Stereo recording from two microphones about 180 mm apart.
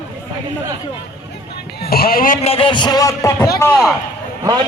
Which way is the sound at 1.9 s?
55° left (ahead or behind).